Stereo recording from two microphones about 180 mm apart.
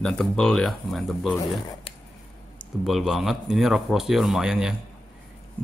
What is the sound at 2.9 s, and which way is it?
Speech, centre (ahead or behind).